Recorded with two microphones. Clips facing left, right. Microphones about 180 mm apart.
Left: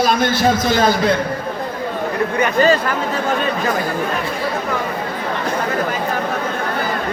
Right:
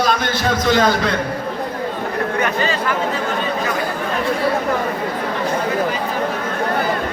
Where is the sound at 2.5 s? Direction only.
40° left (ahead or behind).